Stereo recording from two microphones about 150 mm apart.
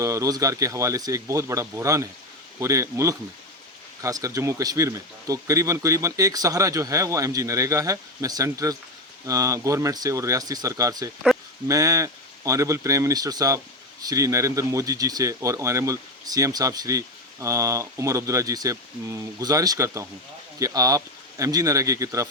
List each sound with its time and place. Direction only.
0.0 s speech: 20° right (ahead or behind)